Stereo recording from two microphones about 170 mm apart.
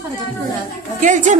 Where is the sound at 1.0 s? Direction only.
45° right (ahead or behind).